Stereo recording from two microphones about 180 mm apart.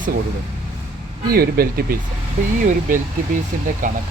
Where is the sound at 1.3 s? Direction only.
55° right (ahead or behind).